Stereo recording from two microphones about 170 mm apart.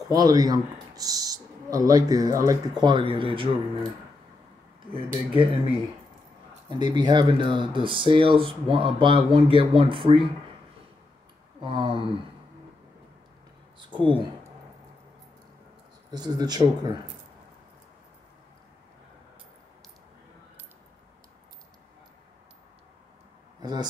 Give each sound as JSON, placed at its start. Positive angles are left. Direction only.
{"t": 0.1, "sound": "speech", "side_deg": -20}
{"t": 4.9, "sound": "speech", "side_deg": -30}
{"t": 6.8, "sound": "speech", "side_deg": -25}
{"t": 11.6, "sound": "speech", "side_deg": -30}
{"t": 13.7, "sound": "a sound", "side_deg": -25}
{"t": 16.1, "sound": "speech", "side_deg": -25}
{"t": 23.6, "sound": "speech", "side_deg": -25}